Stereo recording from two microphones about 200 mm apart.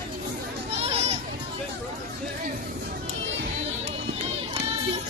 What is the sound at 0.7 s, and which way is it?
Children playing, 30° right (ahead or behind).